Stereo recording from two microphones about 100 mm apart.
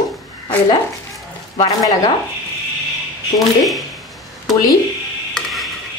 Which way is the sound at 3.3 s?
Centre (ahead or behind).